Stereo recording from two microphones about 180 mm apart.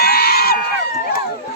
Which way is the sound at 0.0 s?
60° left (ahead or behind).